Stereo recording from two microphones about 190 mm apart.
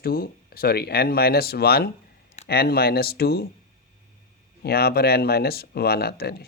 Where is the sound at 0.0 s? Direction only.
50° left (ahead or behind).